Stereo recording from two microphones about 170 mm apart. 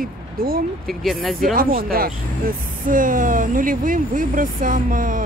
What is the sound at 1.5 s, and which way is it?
Speech, 55° right (ahead or behind).